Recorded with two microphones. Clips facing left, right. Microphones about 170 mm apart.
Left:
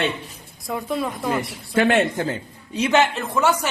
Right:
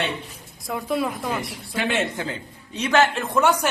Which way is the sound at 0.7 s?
Centre (ahead or behind).